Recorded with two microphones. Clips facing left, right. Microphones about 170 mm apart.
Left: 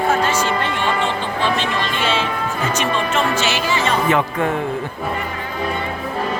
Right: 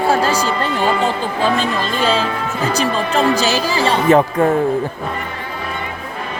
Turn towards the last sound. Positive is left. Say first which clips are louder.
# right 5 dB
turn(degrees=-35)  # may be behind; listen again after turning